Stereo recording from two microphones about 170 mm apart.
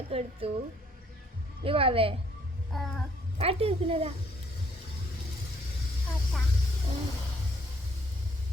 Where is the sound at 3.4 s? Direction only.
35° right (ahead or behind).